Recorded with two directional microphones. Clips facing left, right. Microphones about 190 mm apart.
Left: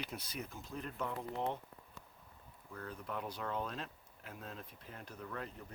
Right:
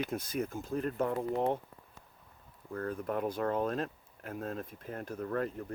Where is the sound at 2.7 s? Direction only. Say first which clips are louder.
Right 10 dB; 50° right (ahead or behind).